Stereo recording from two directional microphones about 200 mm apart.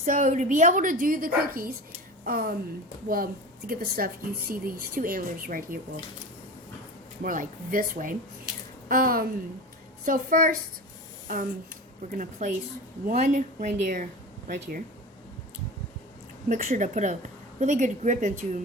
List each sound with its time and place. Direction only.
0.0 s a woman's voice: 40° right (ahead or behind)
3.7 s a woman's voice: 50° right (ahead or behind)
7.2 s a woman's voice: 45° right (ahead or behind)
16.5 s a woman's voice: 35° right (ahead or behind)